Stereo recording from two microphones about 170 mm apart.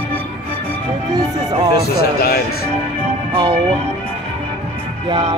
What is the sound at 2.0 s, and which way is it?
Speech, 65° left (ahead or behind).